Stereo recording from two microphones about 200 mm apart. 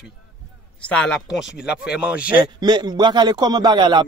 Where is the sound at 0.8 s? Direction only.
5° left (ahead or behind).